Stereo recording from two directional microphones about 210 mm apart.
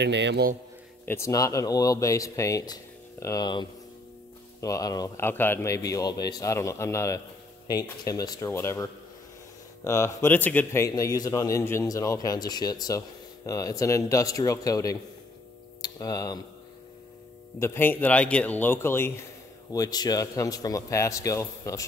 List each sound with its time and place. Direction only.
0.0 s a man's voice: 55° right (ahead or behind)
1.0 s a man's voice: 15° left (ahead or behind)
9.8 s a man's voice: 15° left (ahead or behind)
17.6 s a man's voice: 10° left (ahead or behind)